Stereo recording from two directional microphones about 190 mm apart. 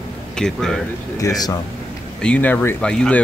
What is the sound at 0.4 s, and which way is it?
Speech, 5° left (ahead or behind).